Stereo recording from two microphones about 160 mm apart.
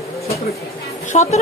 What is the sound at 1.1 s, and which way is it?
Speech, 45° left (ahead or behind).